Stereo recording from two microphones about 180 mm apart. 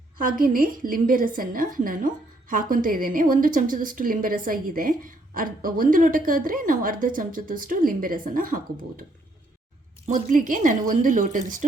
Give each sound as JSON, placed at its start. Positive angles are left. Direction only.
{"t": 0.2, "sound": "a woman's voice", "side_deg": -50}
{"t": 10.1, "sound": "a woman's voice", "side_deg": -45}